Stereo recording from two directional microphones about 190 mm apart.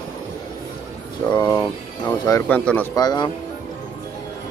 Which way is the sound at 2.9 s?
20° left (ahead or behind).